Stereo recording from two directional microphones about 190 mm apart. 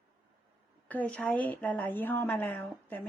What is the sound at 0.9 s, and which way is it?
A woman's voice, 5° left (ahead or behind).